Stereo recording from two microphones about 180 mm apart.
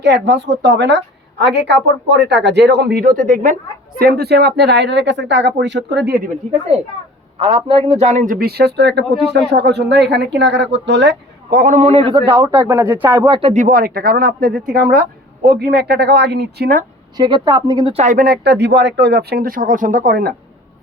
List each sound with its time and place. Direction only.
0.0 s a man's voice: 80° right; by 3.5 s 45° right (ahead or behind)
3.9 s a man's voice: 60° right (ahead or behind)
7.3 s a man's voice: 30° right (ahead or behind); by 11.1 s 80° right
11.5 s a man's voice: 45° right (ahead or behind); by 12.6 s 20° right (ahead or behind)
12.6 s speech: 10° right (ahead or behind)
13.4 s speech: 45° right (ahead or behind); by 16.8 s 60° right (ahead or behind)
17.2 s a man's voice: 25° right (ahead or behind)
17.9 s speech: 45° right (ahead or behind)